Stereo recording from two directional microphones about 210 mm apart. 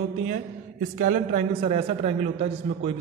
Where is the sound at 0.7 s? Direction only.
40° right (ahead or behind).